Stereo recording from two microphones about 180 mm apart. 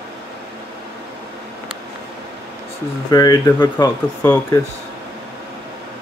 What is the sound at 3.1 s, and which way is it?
Speech, 20° left (ahead or behind).